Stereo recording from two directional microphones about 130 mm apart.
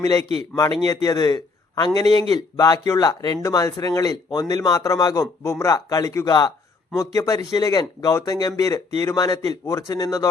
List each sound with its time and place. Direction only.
0.0 s a man's voice: 25° left (ahead or behind)